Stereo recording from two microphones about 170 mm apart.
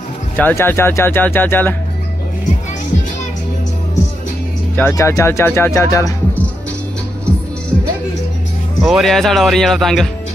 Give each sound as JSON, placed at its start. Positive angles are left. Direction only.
{"t": 0.4, "sound": "speech", "side_deg": 10}
{"t": 4.7, "sound": "speech", "side_deg": 15}
{"t": 8.8, "sound": "speech", "side_deg": 0}